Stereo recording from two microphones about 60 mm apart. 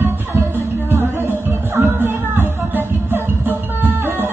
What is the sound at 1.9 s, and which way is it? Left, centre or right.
Music, right.